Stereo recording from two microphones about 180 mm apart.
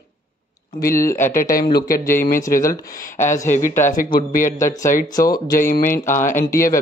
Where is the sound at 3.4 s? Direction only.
45° left (ahead or behind).